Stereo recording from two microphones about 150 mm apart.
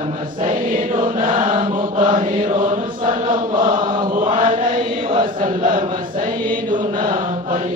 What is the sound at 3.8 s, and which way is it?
Chant, 35° right (ahead or behind).